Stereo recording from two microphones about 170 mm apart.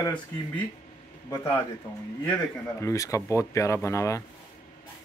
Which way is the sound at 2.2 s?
10° left (ahead or behind).